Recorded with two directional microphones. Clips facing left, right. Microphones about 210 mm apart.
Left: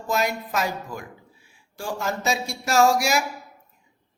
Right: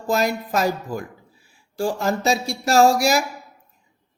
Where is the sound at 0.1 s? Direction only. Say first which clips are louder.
Right 4 dB; 35° right (ahead or behind).